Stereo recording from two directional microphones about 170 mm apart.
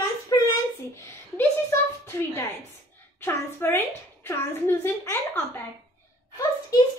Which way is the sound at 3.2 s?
15° left (ahead or behind).